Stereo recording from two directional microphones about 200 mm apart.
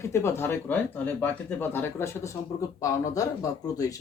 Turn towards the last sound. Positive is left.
turn(degrees=15)  # may be behind; listen again after turning